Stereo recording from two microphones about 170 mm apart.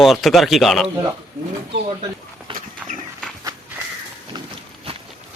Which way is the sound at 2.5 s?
30° right (ahead or behind).